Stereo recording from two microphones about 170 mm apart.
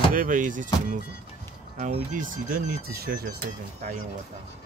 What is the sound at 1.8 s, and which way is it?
Speech, 50° right (ahead or behind).